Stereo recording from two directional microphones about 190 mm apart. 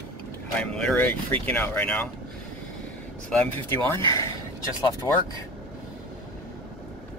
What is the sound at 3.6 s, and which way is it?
Speech, 15° left (ahead or behind).